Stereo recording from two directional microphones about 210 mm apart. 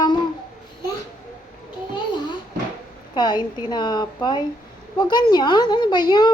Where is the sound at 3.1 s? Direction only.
20° left (ahead or behind).